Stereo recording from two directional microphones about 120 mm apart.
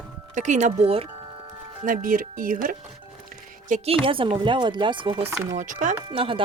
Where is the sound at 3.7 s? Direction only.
90° right.